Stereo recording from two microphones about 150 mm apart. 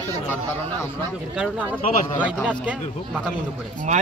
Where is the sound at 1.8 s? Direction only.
65° left (ahead or behind).